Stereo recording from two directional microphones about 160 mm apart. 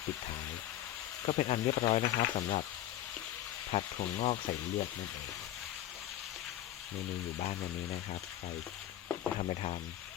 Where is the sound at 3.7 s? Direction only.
45° left (ahead or behind).